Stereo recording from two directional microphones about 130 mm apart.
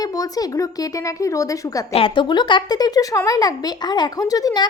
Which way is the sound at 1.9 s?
40° left (ahead or behind).